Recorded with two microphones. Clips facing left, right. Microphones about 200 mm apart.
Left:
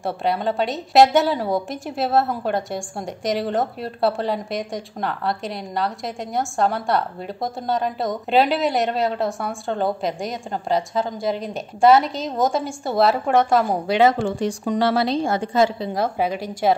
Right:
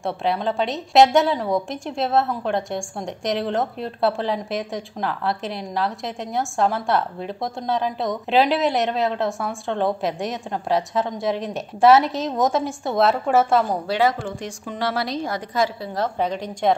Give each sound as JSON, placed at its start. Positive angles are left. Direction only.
{"t": 0.0, "sound": "a woman's voice", "side_deg": 0}
{"t": 13.8, "sound": "a woman's voice", "side_deg": 20}
{"t": 15.9, "sound": "a woman's voice", "side_deg": 10}